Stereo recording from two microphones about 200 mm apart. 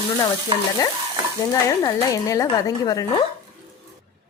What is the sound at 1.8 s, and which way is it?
A woman's voice, 15° left (ahead or behind).